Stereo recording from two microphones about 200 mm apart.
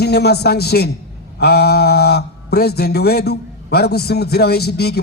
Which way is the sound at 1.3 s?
55° left (ahead or behind).